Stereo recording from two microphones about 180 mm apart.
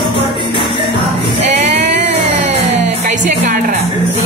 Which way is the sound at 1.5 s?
40° right (ahead or behind).